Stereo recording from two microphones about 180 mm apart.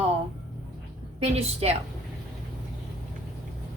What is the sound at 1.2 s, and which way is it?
Speech, 35° right (ahead or behind).